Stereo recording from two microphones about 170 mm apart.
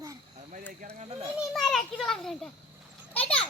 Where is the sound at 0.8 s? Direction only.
40° right (ahead or behind).